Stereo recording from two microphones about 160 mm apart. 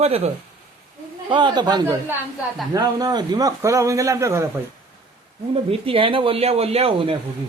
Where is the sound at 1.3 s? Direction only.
30° right (ahead or behind).